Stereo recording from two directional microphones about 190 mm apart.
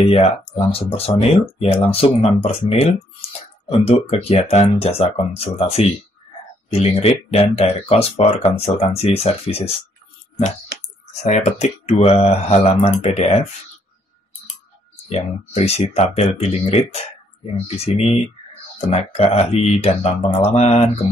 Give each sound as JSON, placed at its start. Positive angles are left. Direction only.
{"t": 0.0, "sound": "speech", "side_deg": 30}
{"t": 11.2, "sound": "speech", "side_deg": 35}
{"t": 15.0, "sound": "speech", "side_deg": 35}